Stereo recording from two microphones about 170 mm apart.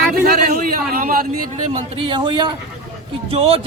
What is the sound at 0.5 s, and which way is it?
Speech, 55° right (ahead or behind).